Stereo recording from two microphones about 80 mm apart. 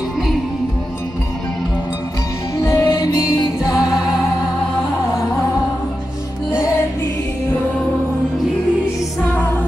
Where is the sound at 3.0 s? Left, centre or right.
Left.